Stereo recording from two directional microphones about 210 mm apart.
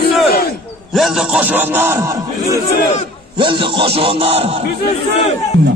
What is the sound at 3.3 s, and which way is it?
A man's voice, 25° right (ahead or behind).